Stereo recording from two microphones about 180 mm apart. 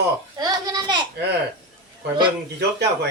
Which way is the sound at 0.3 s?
20° right (ahead or behind).